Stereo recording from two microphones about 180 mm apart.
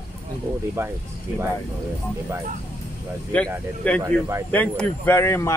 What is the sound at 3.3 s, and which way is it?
Speech, 10° left (ahead or behind).